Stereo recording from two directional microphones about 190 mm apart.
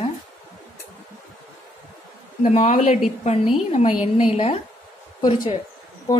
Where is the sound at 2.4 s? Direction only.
40° left (ahead or behind).